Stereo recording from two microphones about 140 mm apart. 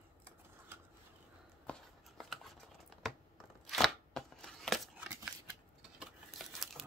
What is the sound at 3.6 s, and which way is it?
Chopping, centre (ahead or behind).